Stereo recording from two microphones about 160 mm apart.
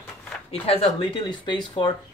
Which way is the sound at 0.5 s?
35° left (ahead or behind).